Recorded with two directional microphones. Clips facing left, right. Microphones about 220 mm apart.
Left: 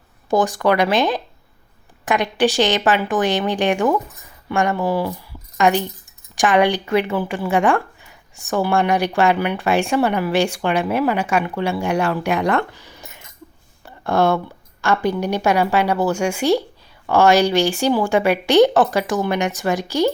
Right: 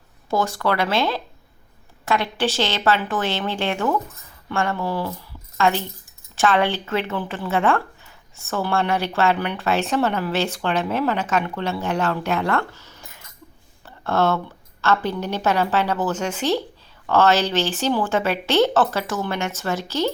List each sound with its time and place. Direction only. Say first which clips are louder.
0.3 s a woman's voice: left 5 dB; 15° left (ahead or behind)